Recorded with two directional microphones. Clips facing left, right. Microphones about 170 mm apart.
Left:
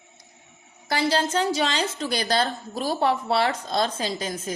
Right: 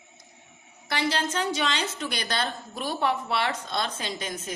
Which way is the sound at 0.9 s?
35° left (ahead or behind).